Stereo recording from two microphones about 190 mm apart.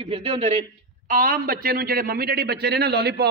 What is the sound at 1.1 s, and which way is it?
A man's voice, 50° right (ahead or behind).